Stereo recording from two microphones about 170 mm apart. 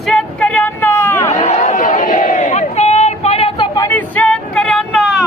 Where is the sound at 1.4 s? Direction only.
40° left (ahead or behind).